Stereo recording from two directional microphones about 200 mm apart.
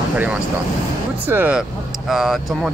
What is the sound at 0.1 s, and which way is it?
Speech, 5° right (ahead or behind).